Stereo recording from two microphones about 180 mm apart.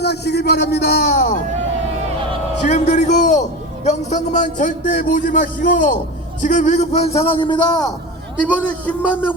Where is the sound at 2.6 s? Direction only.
40° left (ahead or behind); by 7.9 s 20° left (ahead or behind).